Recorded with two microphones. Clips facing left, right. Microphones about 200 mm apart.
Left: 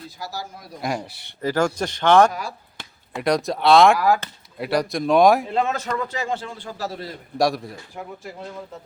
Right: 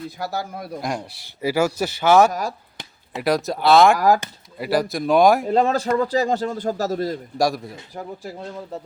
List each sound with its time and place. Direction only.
0.2 s a man's voice: 60° right (ahead or behind)
0.8 s speech: centre (ahead or behind)
3.9 s a man's voice: 40° right (ahead or behind)
4.5 s speech: centre (ahead or behind)
5.5 s a man's voice: 35° right (ahead or behind)
7.3 s speech: centre (ahead or behind)